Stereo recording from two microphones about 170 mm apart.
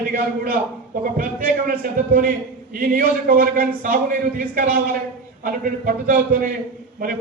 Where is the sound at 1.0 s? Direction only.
55° right (ahead or behind).